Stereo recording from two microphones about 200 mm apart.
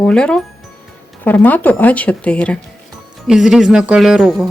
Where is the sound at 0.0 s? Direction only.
5° left (ahead or behind).